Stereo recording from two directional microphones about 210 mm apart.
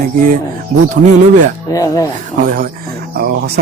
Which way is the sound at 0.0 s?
40° right (ahead or behind).